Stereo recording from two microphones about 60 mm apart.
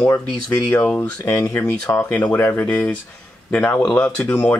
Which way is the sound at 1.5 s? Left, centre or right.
Left.